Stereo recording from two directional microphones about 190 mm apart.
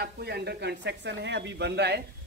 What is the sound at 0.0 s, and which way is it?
A man's voice, 60° right (ahead or behind).